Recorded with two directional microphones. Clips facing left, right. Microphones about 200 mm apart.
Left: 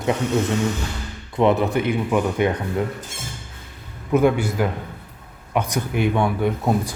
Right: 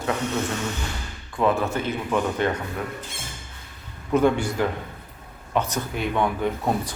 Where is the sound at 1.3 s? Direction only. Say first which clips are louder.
Left 4 dB; 20° left (ahead or behind).